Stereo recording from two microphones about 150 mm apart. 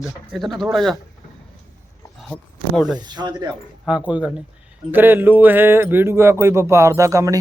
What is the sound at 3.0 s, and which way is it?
Speech, 30° right (ahead or behind).